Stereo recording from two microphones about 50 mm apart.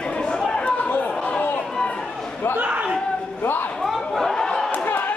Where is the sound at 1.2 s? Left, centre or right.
Left.